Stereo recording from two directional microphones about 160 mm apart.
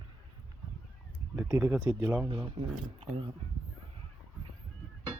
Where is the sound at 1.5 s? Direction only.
5° right (ahead or behind).